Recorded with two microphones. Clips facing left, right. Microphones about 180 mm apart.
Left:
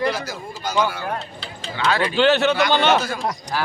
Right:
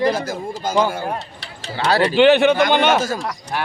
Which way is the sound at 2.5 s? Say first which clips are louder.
Right 3 dB; 50° right (ahead or behind).